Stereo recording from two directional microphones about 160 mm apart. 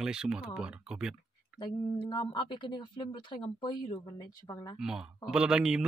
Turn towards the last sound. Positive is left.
turn(degrees=-5)  # may be behind; listen again after turning